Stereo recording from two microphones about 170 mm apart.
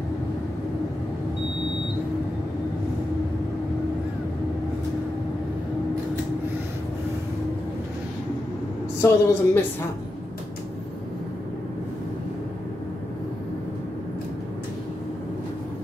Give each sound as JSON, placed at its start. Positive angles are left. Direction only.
{"t": 9.0, "sound": "speech", "side_deg": 15}